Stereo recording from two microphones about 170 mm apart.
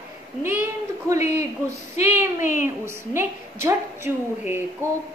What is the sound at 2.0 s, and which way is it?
Speech, 50° left (ahead or behind).